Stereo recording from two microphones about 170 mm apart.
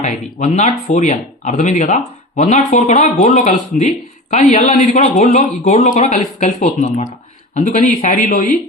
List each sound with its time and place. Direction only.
0.0 s speech: 45° left (ahead or behind)